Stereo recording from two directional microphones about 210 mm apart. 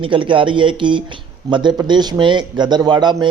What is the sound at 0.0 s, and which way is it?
Speech, 25° right (ahead or behind).